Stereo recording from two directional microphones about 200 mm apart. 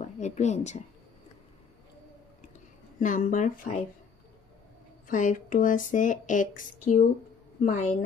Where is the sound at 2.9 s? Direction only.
40° left (ahead or behind).